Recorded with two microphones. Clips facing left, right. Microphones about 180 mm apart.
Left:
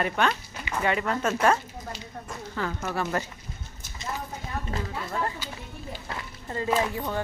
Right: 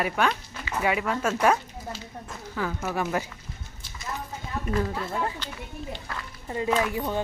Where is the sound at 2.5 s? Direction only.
5° right (ahead or behind).